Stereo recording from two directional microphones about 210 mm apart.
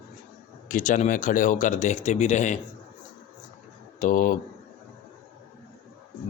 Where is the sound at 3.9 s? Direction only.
40° left (ahead or behind).